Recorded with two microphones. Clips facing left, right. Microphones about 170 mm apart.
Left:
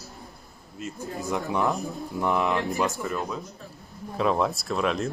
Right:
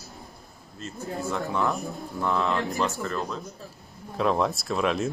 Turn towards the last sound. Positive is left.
turn(degrees=0)  # may be behind; listen again after turning